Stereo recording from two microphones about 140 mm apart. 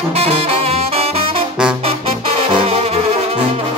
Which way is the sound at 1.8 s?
45° right (ahead or behind).